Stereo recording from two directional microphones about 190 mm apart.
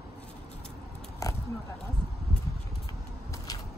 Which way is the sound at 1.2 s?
15° left (ahead or behind).